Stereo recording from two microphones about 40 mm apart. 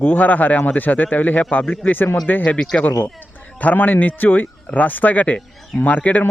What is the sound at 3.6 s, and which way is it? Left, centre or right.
Speech, left.